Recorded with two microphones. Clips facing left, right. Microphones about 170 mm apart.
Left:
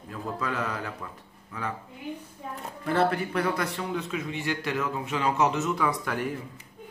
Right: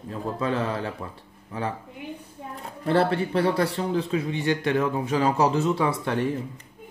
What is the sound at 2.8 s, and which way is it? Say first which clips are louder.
A man's voice: right 3 dB; 30° right (ahead or behind).